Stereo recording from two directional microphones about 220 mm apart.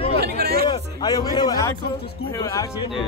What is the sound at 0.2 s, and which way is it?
Hubbub, 45° right (ahead or behind).